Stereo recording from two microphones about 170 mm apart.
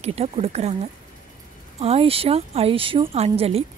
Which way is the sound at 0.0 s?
35° right (ahead or behind).